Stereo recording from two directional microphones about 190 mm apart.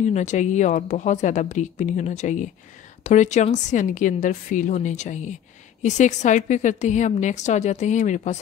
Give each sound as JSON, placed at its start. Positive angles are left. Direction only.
{"t": 0.0, "sound": "a woman's voice", "side_deg": 40}